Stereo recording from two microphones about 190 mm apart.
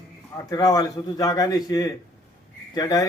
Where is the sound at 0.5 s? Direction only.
20° left (ahead or behind).